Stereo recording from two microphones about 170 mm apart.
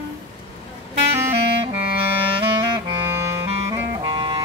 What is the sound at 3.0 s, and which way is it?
Clarinet, 15° right (ahead or behind).